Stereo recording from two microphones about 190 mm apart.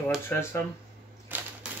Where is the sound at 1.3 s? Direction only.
10° right (ahead or behind).